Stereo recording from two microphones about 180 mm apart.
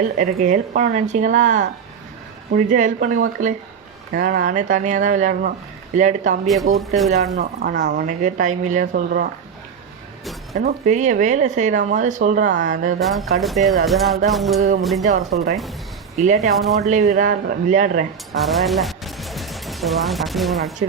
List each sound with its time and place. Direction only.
0.2 s speech: 45° right (ahead or behind)
6.5 s speech: centre (ahead or behind)
7.6 s speech: 65° right (ahead or behind)
7.9 s speech: 45° right (ahead or behind)
10.8 s speech: 40° right (ahead or behind)
13.0 s speech: centre (ahead or behind)
15.0 s speech: 45° right (ahead or behind)
17.1 s speech: 50° right (ahead or behind)
18.3 s music: centre (ahead or behind)